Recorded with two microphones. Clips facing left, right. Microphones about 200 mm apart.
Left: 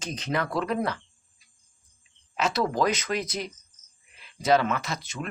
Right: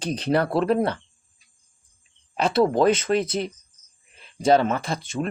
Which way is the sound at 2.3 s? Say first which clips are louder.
Right 6 dB; 30° right (ahead or behind).